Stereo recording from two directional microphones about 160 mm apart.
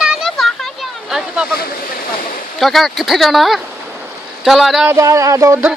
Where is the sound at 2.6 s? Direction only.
Centre (ahead or behind).